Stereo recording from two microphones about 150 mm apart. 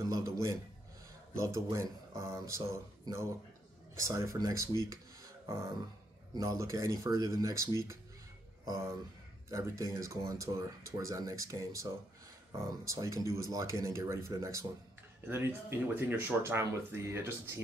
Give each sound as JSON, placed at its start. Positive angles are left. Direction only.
{"t": 0.0, "sound": "a man's voice", "side_deg": -20}
{"t": 9.5, "sound": "speech", "side_deg": -20}